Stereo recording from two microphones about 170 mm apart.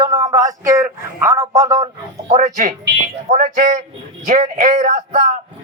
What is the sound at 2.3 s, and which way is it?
A man's voice, 40° right (ahead or behind).